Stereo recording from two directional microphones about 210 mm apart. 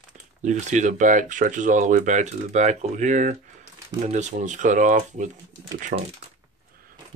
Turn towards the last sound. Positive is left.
turn(degrees=-40)  # may be behind; listen again after turning